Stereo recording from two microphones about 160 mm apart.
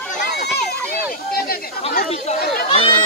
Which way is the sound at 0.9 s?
70° left (ahead or behind).